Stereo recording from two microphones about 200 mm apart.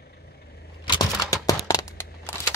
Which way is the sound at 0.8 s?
20° left (ahead or behind).